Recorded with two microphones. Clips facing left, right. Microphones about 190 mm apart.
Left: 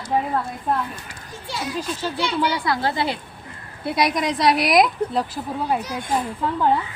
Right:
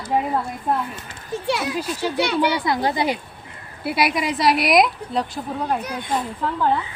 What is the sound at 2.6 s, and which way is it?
Speech, 20° right (ahead or behind).